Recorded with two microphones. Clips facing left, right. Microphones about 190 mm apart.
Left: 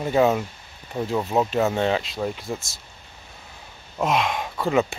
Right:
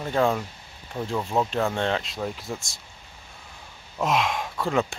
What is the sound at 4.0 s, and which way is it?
Speech, centre (ahead or behind).